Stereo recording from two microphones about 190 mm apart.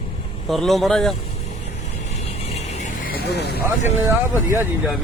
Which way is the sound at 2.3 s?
35° left (ahead or behind).